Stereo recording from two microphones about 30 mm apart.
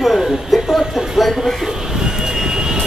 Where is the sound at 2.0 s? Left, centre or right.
Right.